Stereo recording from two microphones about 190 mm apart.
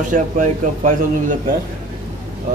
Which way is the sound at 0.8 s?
40° right (ahead or behind).